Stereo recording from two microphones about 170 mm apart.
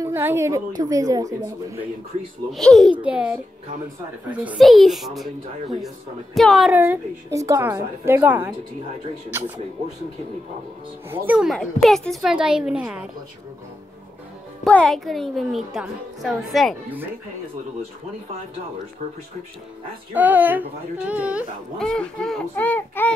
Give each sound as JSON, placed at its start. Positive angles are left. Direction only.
{"t": 0.0, "sound": "a woman's voice", "side_deg": -15}
{"t": 2.5, "sound": "a woman's voice", "side_deg": 0}
{"t": 6.8, "sound": "a woman's voice", "side_deg": -15}
{"t": 11.1, "sound": "a woman's voice", "side_deg": -5}
{"t": 14.6, "sound": "a woman's voice", "side_deg": 5}
{"t": 20.2, "sound": "a woman's voice", "side_deg": -10}
{"t": 21.7, "sound": "a child's voice", "side_deg": 5}